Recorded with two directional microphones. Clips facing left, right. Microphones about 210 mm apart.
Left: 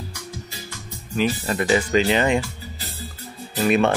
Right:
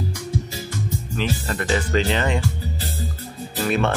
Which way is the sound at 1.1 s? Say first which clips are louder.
Left 5 dB; 10° left (ahead or behind).